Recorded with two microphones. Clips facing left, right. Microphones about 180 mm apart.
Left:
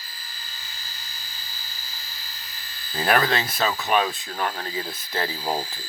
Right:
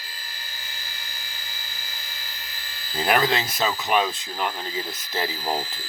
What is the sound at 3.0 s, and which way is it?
Speech, 20° right (ahead or behind).